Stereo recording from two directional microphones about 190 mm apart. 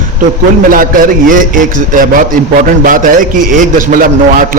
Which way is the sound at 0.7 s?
45° right (ahead or behind).